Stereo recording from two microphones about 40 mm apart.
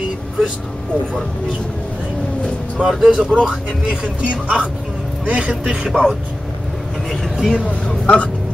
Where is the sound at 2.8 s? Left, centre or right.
Centre.